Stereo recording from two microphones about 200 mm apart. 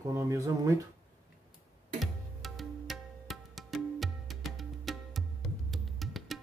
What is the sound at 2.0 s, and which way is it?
Music, centre (ahead or behind).